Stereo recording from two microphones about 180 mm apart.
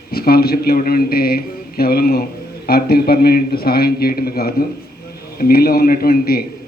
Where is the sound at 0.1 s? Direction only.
60° left (ahead or behind).